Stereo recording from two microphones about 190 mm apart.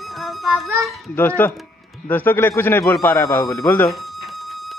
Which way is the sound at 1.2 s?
10° left (ahead or behind).